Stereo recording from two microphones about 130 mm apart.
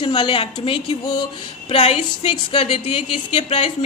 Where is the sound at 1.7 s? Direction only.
45° left (ahead or behind).